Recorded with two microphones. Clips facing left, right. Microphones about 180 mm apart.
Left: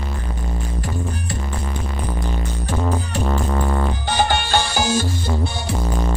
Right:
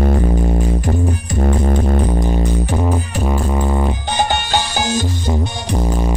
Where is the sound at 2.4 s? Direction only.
15° right (ahead or behind).